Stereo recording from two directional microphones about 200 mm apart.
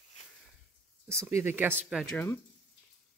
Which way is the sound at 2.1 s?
10° left (ahead or behind).